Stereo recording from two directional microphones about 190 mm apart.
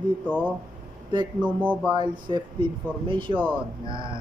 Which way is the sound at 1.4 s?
10° right (ahead or behind).